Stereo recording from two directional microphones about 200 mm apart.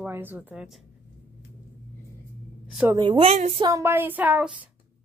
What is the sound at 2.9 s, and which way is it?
Speech, 25° right (ahead or behind).